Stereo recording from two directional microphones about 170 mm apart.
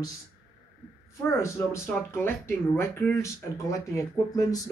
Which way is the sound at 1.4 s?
15° left (ahead or behind).